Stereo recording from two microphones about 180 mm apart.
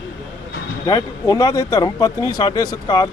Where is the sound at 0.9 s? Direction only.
20° left (ahead or behind).